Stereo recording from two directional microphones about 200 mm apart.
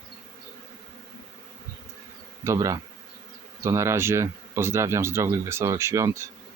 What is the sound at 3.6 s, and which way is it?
Speech, 15° right (ahead or behind).